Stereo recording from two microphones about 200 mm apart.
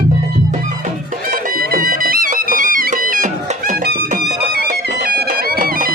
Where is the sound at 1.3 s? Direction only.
45° right (ahead or behind).